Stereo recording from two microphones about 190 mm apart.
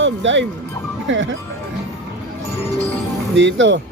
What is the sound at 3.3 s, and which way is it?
Speech, 75° right (ahead or behind).